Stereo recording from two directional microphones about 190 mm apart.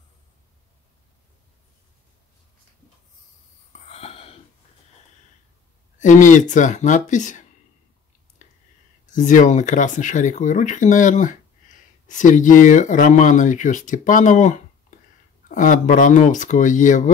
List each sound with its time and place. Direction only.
3.9 s wheeze: 30° left (ahead or behind)
5.9 s speech: 40° left (ahead or behind)
9.1 s speech: 40° left (ahead or behind)